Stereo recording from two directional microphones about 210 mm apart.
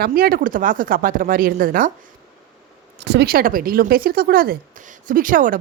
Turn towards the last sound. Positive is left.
turn(degrees=-40)  # may be behind; listen again after turning